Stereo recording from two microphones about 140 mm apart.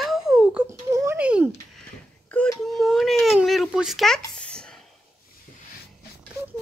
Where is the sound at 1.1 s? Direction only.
10° right (ahead or behind).